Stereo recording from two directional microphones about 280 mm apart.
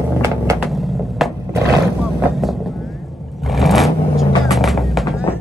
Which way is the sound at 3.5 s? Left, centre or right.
Centre.